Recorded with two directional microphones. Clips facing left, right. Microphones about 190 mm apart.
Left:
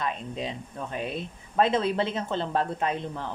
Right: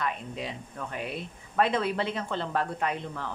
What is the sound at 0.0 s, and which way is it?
Speech, 25° left (ahead or behind).